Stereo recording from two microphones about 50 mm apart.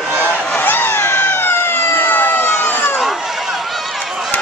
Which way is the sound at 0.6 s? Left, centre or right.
Left.